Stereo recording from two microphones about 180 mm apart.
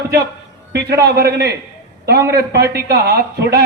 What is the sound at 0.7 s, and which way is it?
A man's voice, 65° right (ahead or behind).